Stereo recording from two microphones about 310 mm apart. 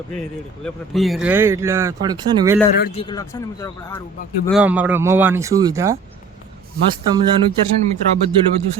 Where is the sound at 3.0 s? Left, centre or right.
Centre.